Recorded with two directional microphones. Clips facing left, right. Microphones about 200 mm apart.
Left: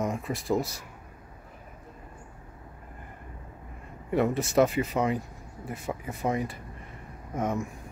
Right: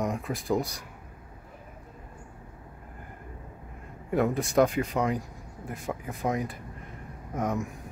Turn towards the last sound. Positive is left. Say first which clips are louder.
# even
turn(degrees=0)  # may be behind; listen again after turning